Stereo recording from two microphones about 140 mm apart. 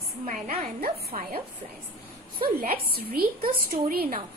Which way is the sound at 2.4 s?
90° right.